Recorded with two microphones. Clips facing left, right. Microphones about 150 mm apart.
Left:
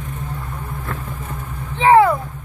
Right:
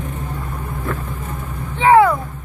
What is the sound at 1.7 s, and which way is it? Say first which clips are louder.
Vehicle: even; 25° left (ahead or behind).